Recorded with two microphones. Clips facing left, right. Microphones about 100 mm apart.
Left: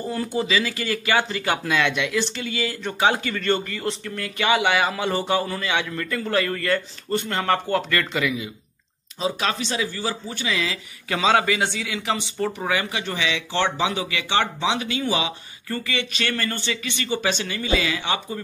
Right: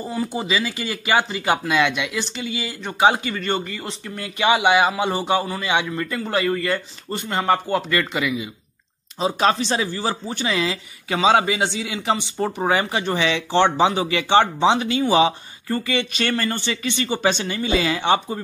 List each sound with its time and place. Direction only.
0.1 s a man's voice: 10° right (ahead or behind)
9.2 s speech: 35° right (ahead or behind)
11.1 s speech: 15° right (ahead or behind); by 18.4 s 35° right (ahead or behind)